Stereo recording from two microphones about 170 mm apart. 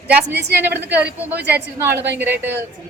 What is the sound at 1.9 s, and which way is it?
Speech, 90° right.